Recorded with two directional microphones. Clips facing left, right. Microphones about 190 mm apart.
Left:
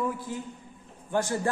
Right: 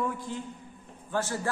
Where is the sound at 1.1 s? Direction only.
15° left (ahead or behind).